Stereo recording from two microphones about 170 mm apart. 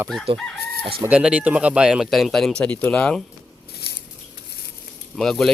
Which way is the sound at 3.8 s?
65° left (ahead or behind).